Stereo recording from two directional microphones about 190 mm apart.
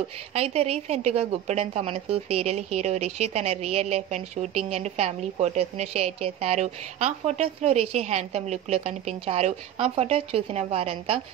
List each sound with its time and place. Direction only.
0.3 s a woman's voice: 35° right (ahead or behind)